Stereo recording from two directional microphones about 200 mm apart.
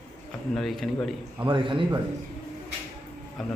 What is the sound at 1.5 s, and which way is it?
Speech, 25° right (ahead or behind).